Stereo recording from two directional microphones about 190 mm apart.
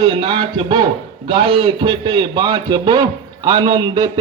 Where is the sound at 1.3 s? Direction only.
25° right (ahead or behind).